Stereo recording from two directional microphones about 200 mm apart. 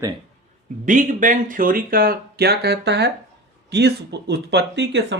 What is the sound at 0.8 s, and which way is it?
Speech, 40° right (ahead or behind).